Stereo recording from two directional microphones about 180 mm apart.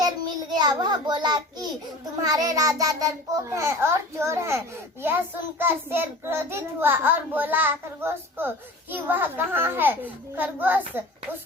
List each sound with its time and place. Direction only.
0.5 s a child's voice: 25° right (ahead or behind)